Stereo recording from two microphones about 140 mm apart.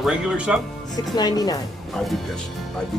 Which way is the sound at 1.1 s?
30° left (ahead or behind).